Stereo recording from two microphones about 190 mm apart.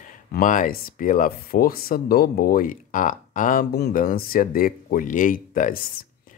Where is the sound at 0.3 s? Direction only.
45° left (ahead or behind).